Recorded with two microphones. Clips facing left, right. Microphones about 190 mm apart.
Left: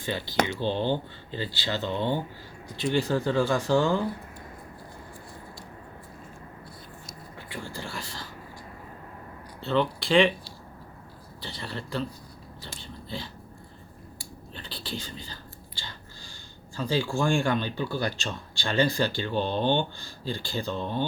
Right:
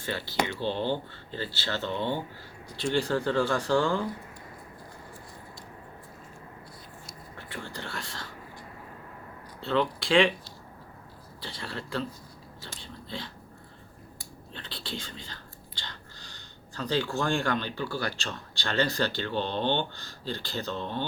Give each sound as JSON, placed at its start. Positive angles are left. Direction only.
{"t": 0.0, "sound": "speech", "side_deg": 15}
{"t": 3.2, "sound": "speech", "side_deg": 15}
{"t": 7.3, "sound": "speech", "side_deg": 10}
{"t": 9.6, "sound": "speech", "side_deg": 0}
{"t": 11.4, "sound": "speech", "side_deg": 0}
{"t": 12.6, "sound": "a sound", "side_deg": 0}
{"t": 14.5, "sound": "whispering", "side_deg": 5}
{"t": 14.8, "sound": "speech", "side_deg": 5}